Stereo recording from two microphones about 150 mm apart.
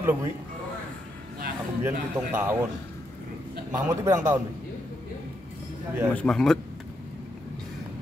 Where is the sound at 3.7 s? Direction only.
20° right (ahead or behind).